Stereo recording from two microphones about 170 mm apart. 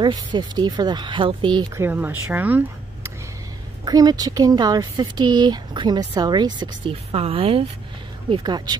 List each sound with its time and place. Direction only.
0.0 s speech: 25° right (ahead or behind)
1.8 s speech: 10° right (ahead or behind)
3.8 s speech: 25° right (ahead or behind)